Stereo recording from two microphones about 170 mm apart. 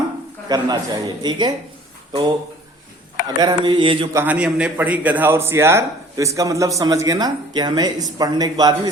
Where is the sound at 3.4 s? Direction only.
25° right (ahead or behind).